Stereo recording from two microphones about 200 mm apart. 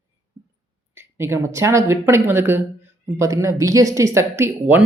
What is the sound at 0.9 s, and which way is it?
Speech, 10° right (ahead or behind).